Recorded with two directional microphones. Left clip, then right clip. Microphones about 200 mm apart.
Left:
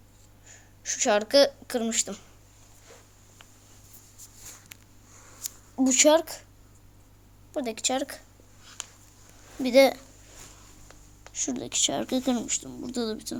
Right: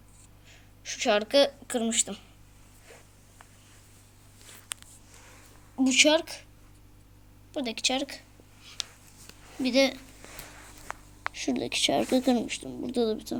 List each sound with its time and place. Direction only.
0.4 s speech: 5° left (ahead or behind)
5.7 s speech: 10° left (ahead or behind)
7.5 s speech: 5° left (ahead or behind)
8.8 s a sound: 25° left (ahead or behind)
9.6 s speech: 20° left (ahead or behind)
11.4 s speech: 15° left (ahead or behind)